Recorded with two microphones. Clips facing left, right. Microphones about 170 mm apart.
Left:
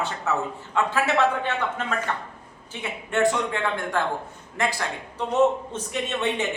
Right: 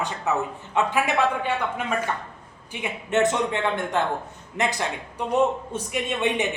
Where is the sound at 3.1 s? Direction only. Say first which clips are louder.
Right 1 dB; 20° right (ahead or behind).